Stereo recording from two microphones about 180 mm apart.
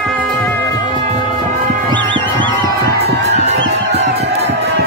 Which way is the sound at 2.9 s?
65° right (ahead or behind).